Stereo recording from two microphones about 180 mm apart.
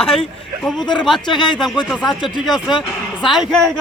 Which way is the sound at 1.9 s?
Centre (ahead or behind).